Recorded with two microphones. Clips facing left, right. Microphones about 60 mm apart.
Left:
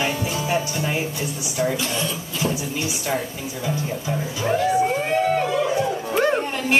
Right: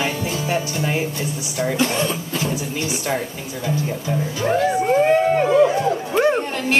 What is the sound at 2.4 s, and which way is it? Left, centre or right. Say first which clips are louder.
Speech: left 4 dB; centre.